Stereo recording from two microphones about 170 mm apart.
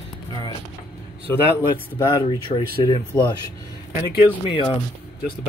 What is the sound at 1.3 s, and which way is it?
Speech, 15° left (ahead or behind).